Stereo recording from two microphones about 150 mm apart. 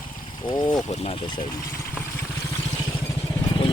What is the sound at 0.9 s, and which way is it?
Speech, 40° left (ahead or behind).